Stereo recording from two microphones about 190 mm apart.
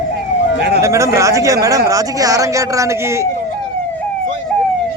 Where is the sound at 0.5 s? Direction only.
60° right (ahead or behind).